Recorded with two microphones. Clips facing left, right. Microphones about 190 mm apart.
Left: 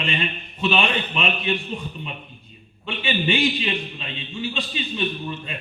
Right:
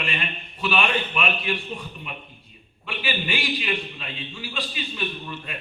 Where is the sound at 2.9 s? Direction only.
25° left (ahead or behind).